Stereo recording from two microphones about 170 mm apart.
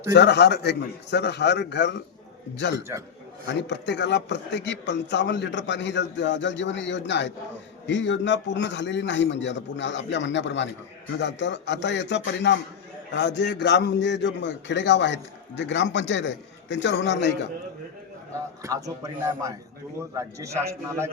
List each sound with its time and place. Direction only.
0.1 s a man's voice: 85° left
18.6 s a man's voice: 20° right (ahead or behind)